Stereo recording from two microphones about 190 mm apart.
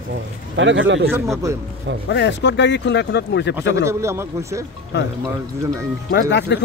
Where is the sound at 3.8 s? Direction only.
15° right (ahead or behind).